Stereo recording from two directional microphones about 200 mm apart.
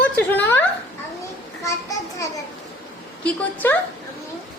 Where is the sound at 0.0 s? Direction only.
10° left (ahead or behind).